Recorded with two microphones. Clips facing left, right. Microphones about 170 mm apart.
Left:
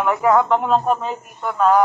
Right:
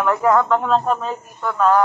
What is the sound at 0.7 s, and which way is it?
Speech, 15° left (ahead or behind).